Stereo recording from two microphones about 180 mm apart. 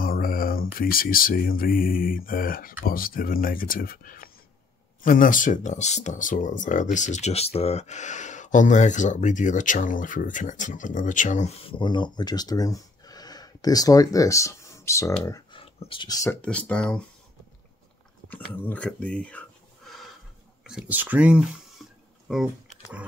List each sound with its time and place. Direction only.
0.0 s speech: 55° left (ahead or behind); by 15.1 s 15° left (ahead or behind)
15.2 s a sound: 20° left (ahead or behind)
15.6 s speech: 30° left (ahead or behind); by 17.0 s 5° left (ahead or behind)
18.3 s speech: 10° left (ahead or behind)